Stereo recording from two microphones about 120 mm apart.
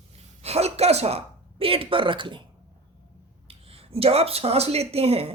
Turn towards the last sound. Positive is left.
turn(degrees=-55)  # may be behind; listen again after turning